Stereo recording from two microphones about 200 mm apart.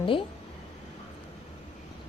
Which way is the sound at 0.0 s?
25° left (ahead or behind).